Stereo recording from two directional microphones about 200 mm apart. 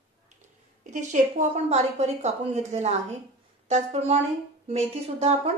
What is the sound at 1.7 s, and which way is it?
A woman's voice, 30° right (ahead or behind).